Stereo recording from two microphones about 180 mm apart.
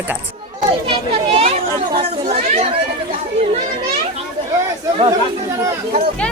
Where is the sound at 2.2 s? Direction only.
35° right (ahead or behind).